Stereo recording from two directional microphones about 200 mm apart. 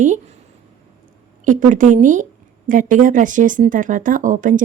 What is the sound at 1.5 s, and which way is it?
Speech, 40° right (ahead or behind).